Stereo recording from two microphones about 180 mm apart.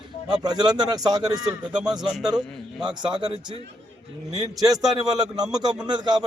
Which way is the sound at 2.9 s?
25° right (ahead or behind).